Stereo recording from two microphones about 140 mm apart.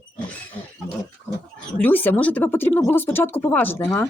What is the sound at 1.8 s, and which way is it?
Speech, 15° left (ahead or behind).